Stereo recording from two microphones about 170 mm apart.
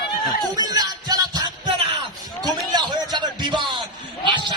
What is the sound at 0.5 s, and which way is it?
Music, 25° right (ahead or behind).